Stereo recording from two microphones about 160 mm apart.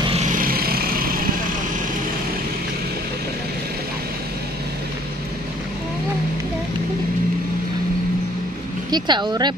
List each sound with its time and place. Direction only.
0.1 s vehicle: 50° right (ahead or behind); by 1.1 s 65° right (ahead or behind)
8.9 s speech: 25° right (ahead or behind)